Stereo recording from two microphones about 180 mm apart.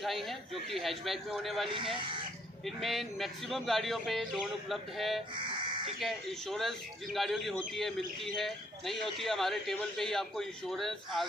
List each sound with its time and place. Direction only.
0.0 s a man's voice: centre (ahead or behind)
1.7 s speech: 30° right (ahead or behind)
2.6 s a man's voice: centre (ahead or behind)
5.4 s buzzer: 25° right (ahead or behind)
5.9 s a man's voice: centre (ahead or behind)